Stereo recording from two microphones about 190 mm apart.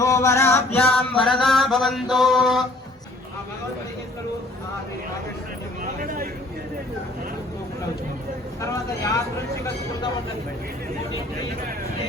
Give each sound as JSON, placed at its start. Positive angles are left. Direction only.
{"t": 0.0, "sound": "music", "side_deg": 15}
{"t": 1.1, "sound": "mantra", "side_deg": 0}
{"t": 5.8, "sound": "a sound", "side_deg": -50}
{"t": 8.6, "sound": "speech", "side_deg": 15}